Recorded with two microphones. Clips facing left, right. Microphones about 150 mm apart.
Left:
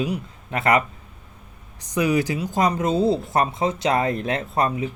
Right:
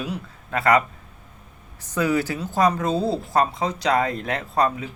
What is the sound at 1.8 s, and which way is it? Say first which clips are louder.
Speech: left 1 dB; 15° left (ahead or behind).